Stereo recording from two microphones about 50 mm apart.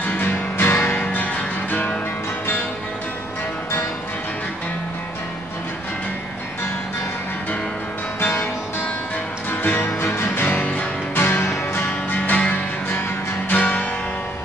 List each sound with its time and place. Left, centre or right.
0.0 s music: left
0.6 s music: left
0.9 s music: left
8.2 s music: left
9.5 s music: left
10.4 s music: left
11.1 s music: left
12.1 s music: left